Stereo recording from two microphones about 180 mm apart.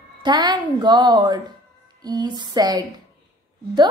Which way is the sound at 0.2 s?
25° right (ahead or behind).